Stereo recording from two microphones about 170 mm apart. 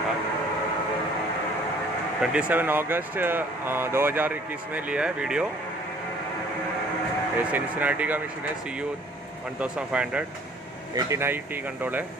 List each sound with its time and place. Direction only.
2.2 s speech: 5° right (ahead or behind)
7.5 s speech: 10° right (ahead or behind)
9.6 s speech: 5° right (ahead or behind)